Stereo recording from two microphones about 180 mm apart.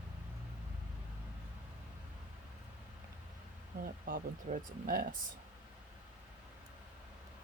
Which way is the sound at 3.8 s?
50° right (ahead or behind).